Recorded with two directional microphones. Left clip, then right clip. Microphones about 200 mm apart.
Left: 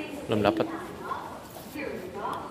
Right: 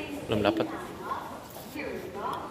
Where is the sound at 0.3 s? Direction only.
20° left (ahead or behind).